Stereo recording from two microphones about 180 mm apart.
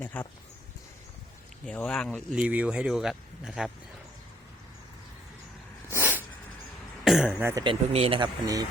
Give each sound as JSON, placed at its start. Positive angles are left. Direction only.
{"t": 0.0, "sound": "speech", "side_deg": 10}
{"t": 1.6, "sound": "speech", "side_deg": 5}
{"t": 5.9, "sound": "snort", "side_deg": -10}
{"t": 7.0, "sound": "speech", "side_deg": -5}
{"t": 7.6, "sound": "speech", "side_deg": -30}